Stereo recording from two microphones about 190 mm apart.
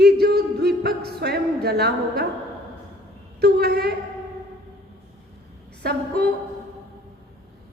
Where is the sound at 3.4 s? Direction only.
55° right (ahead or behind).